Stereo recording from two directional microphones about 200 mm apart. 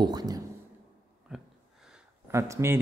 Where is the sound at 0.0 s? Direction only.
20° right (ahead or behind).